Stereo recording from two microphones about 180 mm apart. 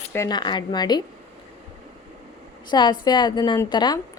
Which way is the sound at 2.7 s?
25° left (ahead or behind).